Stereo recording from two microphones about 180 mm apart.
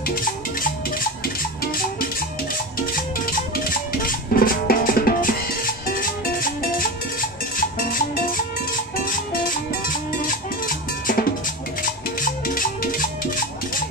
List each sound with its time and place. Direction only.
0.1 s music: 50° left (ahead or behind)
3.5 s drum: 55° left (ahead or behind)
8.9 s music: 50° left (ahead or behind)